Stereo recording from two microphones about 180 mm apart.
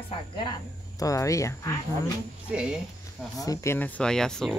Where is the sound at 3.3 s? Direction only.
15° left (ahead or behind).